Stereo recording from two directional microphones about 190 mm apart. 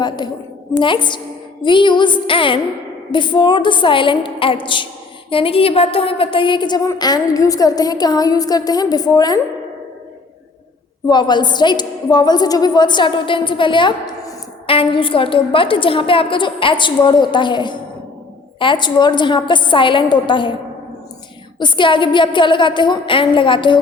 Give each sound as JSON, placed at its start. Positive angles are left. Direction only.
{"t": 0.2, "sound": "a woman's voice", "side_deg": 20}
{"t": 11.1, "sound": "a woman's voice", "side_deg": 25}
{"t": 21.6, "sound": "a woman's voice", "side_deg": 25}